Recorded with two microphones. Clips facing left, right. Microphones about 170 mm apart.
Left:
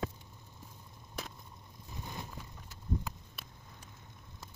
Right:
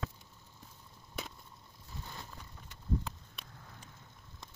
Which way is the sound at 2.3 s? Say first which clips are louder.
Left 3 dB; 5° left (ahead or behind).